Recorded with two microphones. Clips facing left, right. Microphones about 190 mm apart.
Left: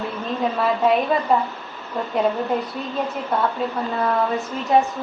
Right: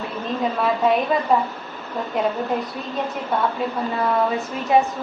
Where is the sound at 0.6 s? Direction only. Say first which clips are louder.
Left 1 dB; centre (ahead or behind).